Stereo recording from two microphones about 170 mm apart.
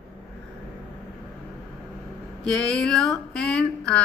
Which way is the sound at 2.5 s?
5° left (ahead or behind).